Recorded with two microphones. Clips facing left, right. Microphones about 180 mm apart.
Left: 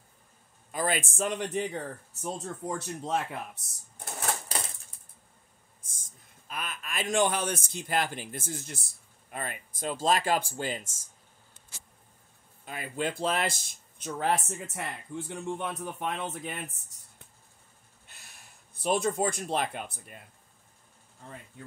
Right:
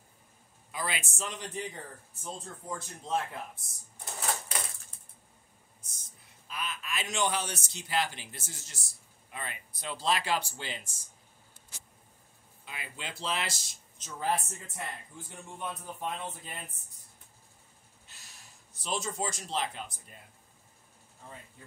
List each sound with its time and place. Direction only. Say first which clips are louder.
0.7 s a man's voice: left 7 dB; 45° left (ahead or behind); by 4.1 s 70° left (ahead or behind)
5.9 s speech: left 3 dB; 50° left (ahead or behind)
12.6 s speech: left 10 dB; 45° left (ahead or behind); by 17.3 s 80° left
18.0 s a sound: left 2 dB; 55° left (ahead or behind)